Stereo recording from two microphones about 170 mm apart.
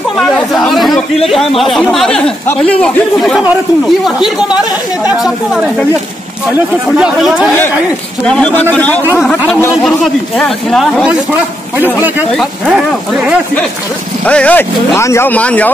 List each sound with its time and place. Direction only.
0.5 s a man's voice: centre (ahead or behind)
7.0 s speech: 5° right (ahead or behind); by 9.8 s 15° left (ahead or behind)
9.8 s speech: 5° left (ahead or behind)
11.8 s a man's voice: 10° right (ahead or behind)
14.2 s speech: 10° left (ahead or behind)